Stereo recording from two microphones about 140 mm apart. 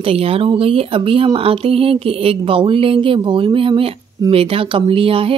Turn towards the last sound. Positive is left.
turn(degrees=-40)  # may be behind; listen again after turning